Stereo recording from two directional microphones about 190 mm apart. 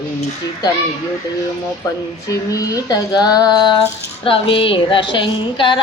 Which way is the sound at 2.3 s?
20° left (ahead or behind).